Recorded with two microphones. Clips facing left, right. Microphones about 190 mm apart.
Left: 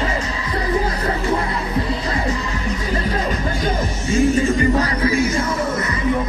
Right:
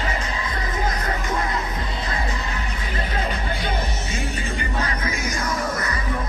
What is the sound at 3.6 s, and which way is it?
Music, 40° left (ahead or behind).